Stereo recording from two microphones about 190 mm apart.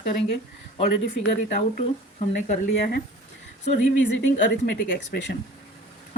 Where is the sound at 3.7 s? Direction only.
65° left (ahead or behind).